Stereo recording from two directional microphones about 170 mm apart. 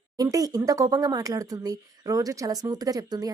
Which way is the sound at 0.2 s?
20° right (ahead or behind).